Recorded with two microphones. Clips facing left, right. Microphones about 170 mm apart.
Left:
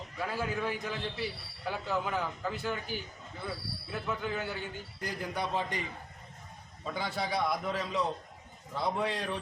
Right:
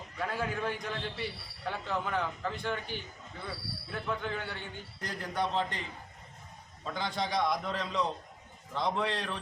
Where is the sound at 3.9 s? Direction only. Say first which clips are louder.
Left 1 dB; 5° left (ahead or behind).